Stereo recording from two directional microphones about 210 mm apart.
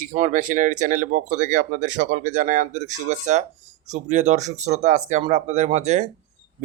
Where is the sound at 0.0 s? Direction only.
35° right (ahead or behind).